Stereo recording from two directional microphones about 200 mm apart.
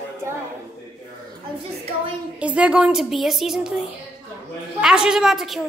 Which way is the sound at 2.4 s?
5° right (ahead or behind).